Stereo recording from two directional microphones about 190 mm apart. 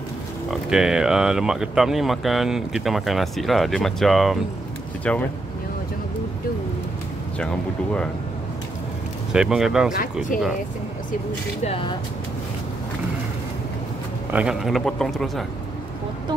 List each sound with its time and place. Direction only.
0.5 s speech: 5° right (ahead or behind)
7.3 s speech: 5° left (ahead or behind)
9.3 s speech: 5° right (ahead or behind)
11.6 s speech: 30° left (ahead or behind)
14.3 s speech: 5° right (ahead or behind)